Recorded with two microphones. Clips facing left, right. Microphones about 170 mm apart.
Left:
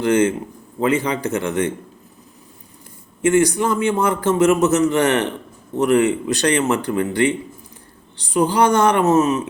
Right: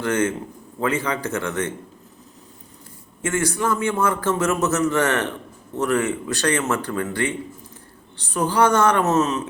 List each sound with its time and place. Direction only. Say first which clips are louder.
0.0 s a man's voice: left 5 dB; 15° left (ahead or behind)
3.2 s a man's voice: left 8 dB; 15° left (ahead or behind)